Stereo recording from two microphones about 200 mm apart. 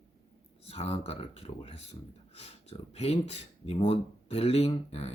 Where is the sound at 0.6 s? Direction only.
30° left (ahead or behind).